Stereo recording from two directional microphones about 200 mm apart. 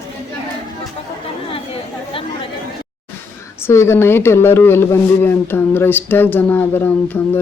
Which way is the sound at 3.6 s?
15° left (ahead or behind).